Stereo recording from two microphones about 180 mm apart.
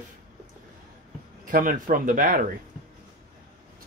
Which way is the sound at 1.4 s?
50° right (ahead or behind).